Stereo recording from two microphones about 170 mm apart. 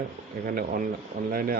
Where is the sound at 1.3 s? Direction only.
60° right (ahead or behind).